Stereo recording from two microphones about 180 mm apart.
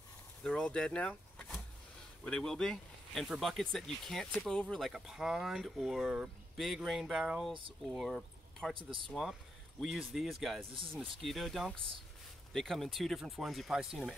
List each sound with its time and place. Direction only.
0.4 s speech: 5° left (ahead or behind)
8.7 s speech: 30° right (ahead or behind)
9.1 s speech: centre (ahead or behind)